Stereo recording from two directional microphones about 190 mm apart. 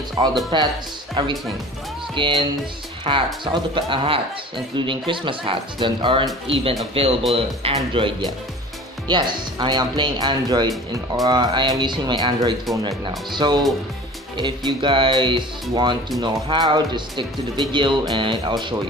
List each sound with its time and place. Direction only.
0.2 s speech: 25° right (ahead or behind)